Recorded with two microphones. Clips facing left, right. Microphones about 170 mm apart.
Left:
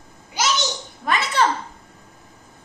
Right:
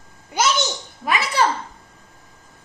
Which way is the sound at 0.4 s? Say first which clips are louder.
Right 4 dB; 55° right (ahead or behind).